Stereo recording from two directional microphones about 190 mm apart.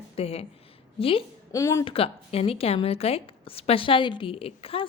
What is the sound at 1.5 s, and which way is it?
Speech, 15° left (ahead or behind).